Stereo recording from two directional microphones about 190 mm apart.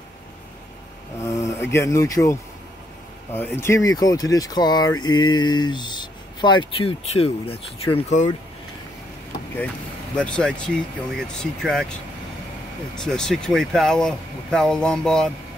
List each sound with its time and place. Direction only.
1.2 s speech: 15° left (ahead or behind)
3.3 s speech: 10° left (ahead or behind); by 8.3 s 35° left (ahead or behind)
10.1 s speech: 5° left (ahead or behind)